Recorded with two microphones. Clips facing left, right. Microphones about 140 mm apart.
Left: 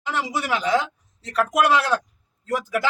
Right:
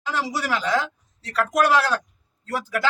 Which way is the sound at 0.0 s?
20° left (ahead or behind).